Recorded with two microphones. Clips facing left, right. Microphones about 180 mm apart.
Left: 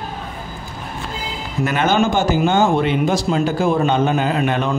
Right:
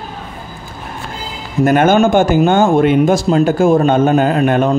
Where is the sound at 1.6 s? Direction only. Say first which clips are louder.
Right 7 dB; 50° right (ahead or behind).